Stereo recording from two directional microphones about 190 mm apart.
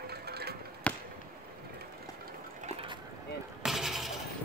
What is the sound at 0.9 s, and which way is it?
Basketball bounce, 5° left (ahead or behind).